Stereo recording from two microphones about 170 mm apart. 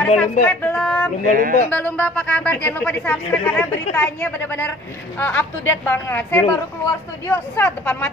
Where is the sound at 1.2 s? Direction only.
55° right (ahead or behind).